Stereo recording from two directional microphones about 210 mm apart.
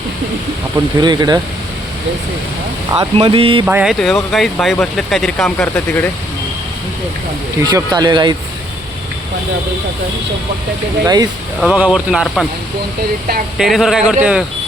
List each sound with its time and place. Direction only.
1.0 s speech: 20° right (ahead or behind)
2.9 s speech: 25° right (ahead or behind)
3.7 s speech: 5° right (ahead or behind)
7.7 s speech: 20° right (ahead or behind)
11.0 s speech: 15° right (ahead or behind)
11.6 s speech: 5° right (ahead or behind)
13.6 s speech: centre (ahead or behind)